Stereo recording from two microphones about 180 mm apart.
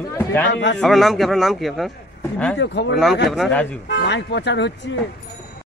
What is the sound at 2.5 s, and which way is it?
Speech, 75° left (ahead or behind).